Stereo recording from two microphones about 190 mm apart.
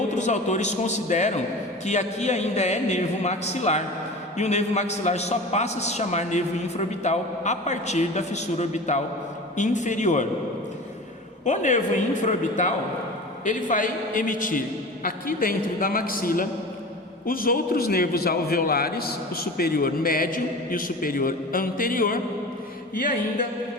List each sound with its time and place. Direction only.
0.1 s a man's voice: 40° left (ahead or behind)
11.4 s a man's voice: 40° left (ahead or behind)